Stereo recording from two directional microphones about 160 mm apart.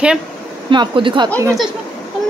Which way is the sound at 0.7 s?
30° right (ahead or behind).